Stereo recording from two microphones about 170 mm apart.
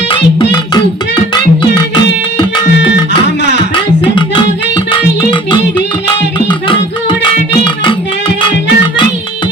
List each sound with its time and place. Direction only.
0.5 s music: 25° left (ahead or behind)
2.7 s music: 85° left
4.0 s music: 30° left (ahead or behind)